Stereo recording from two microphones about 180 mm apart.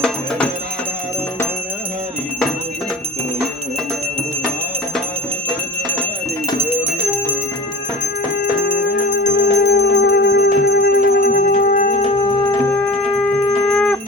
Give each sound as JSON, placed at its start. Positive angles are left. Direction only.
{"t": 0.0, "sound": "music", "side_deg": 5}
{"t": 8.4, "sound": "bell", "side_deg": 50}
{"t": 9.3, "sound": "music", "side_deg": 70}
{"t": 13.7, "sound": "music", "side_deg": 5}